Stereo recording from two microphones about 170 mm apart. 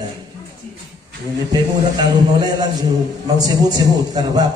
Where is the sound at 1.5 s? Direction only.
25° right (ahead or behind).